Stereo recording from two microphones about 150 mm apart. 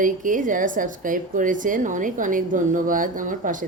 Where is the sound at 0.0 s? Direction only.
60° right (ahead or behind).